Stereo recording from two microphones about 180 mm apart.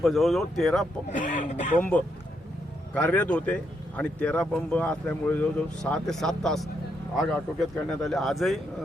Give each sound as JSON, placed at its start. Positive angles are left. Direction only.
{"t": 0.0, "sound": "speech", "side_deg": 0}
{"t": 1.1, "sound": "speech", "side_deg": 45}
{"t": 1.8, "sound": "speech", "side_deg": 10}